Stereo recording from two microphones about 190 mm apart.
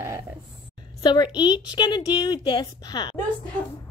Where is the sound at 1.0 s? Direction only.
20° left (ahead or behind).